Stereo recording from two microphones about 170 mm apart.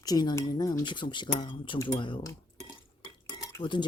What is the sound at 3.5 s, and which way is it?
Stir, 30° left (ahead or behind).